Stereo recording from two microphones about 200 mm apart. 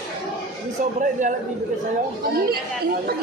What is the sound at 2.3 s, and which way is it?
Speech, 50° right (ahead or behind).